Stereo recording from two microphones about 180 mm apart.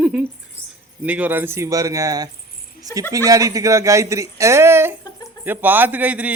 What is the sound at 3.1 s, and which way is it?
A man's voice, 20° right (ahead or behind).